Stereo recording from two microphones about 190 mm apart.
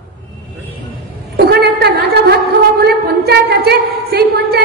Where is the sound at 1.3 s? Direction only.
55° right (ahead or behind).